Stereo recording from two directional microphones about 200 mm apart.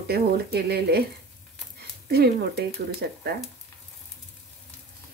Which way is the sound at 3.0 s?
55° right (ahead or behind).